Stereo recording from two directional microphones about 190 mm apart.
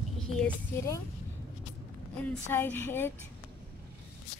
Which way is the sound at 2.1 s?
10° left (ahead or behind).